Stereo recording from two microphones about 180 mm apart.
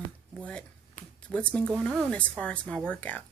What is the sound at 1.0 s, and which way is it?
Speech, 45° left (ahead or behind).